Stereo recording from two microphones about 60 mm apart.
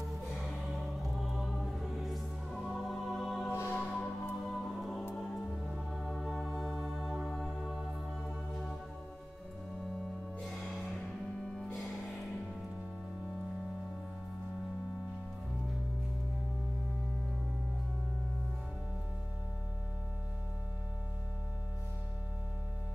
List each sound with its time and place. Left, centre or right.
0.4 s music: centre
3.4 s music: left
3.7 s music: centre
4.5 s music: centre
6.5 s music: centre
10.4 s music: centre
11.7 s music: centre